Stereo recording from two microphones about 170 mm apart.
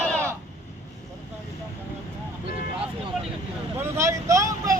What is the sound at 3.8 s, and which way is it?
Vehicle, 15° right (ahead or behind).